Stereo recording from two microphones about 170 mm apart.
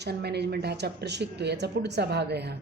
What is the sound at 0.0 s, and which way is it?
A woman's voice, 75° right (ahead or behind).